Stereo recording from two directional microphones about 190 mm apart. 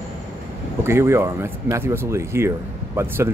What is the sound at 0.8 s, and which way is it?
Speech, 15° right (ahead or behind).